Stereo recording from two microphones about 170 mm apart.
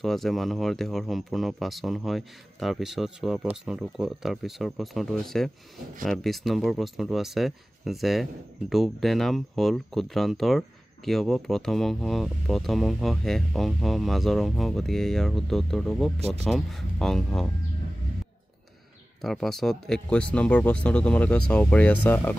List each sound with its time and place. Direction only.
0.0 s speech: centre (ahead or behind)
16.2 s speech: 35° right (ahead or behind)
16.4 s speech: centre (ahead or behind)
19.2 s speech: centre (ahead or behind)